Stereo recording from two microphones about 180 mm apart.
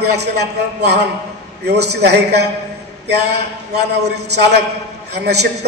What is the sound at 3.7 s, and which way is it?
A man's voice, 65° right (ahead or behind).